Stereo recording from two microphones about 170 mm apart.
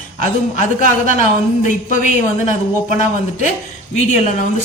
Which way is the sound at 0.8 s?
45° left (ahead or behind).